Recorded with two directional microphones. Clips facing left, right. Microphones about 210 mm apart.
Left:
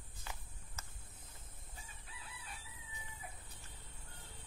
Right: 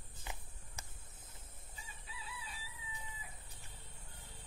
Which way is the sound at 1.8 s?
50° left (ahead or behind).